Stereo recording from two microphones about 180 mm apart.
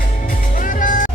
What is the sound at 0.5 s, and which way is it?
Music, 50° left (ahead or behind).